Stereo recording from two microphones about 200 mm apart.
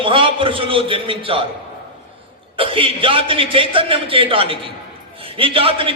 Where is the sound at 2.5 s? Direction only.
25° right (ahead or behind).